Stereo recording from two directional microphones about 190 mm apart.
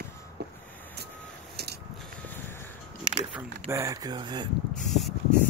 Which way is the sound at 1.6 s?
55° right (ahead or behind).